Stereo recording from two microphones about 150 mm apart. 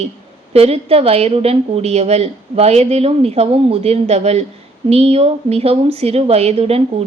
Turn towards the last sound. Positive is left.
turn(degrees=-40)  # may be behind; listen again after turning